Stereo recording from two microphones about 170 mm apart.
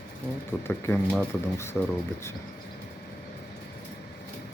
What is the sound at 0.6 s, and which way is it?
Speech, 10° left (ahead or behind).